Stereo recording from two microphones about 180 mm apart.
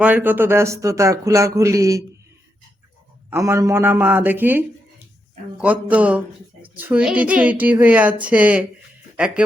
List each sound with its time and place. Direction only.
0.0 s speech: 10° right (ahead or behind)
3.2 s speech: 15° right (ahead or behind)